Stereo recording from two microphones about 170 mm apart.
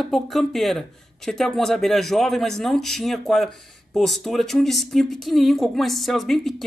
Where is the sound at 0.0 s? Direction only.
Centre (ahead or behind).